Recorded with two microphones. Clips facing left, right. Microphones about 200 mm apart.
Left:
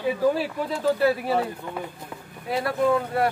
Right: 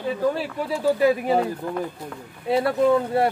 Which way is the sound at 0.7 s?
15° right (ahead or behind).